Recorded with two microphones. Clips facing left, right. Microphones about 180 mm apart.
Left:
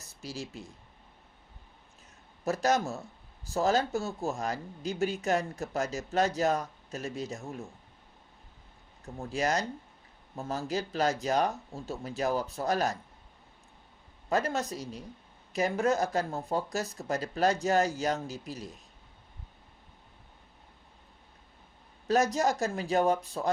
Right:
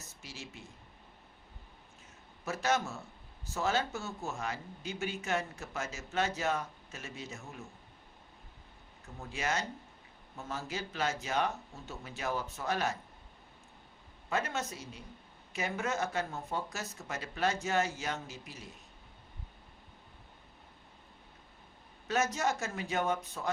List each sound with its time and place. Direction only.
0.0 s speech: 35° left (ahead or behind)
2.4 s speech: 35° left (ahead or behind)
9.1 s speech: 35° left (ahead or behind)
14.3 s speech: 35° left (ahead or behind)
22.0 s speech: 35° left (ahead or behind)